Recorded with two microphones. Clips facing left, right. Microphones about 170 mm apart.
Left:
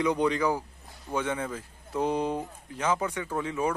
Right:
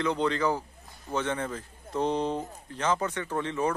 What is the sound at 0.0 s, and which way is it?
Speech, 10° left (ahead or behind).